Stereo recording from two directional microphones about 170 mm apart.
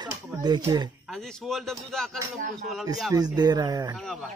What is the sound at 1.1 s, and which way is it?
Speech, centre (ahead or behind).